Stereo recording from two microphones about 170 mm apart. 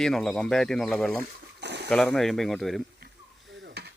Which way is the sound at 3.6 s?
75° right (ahead or behind).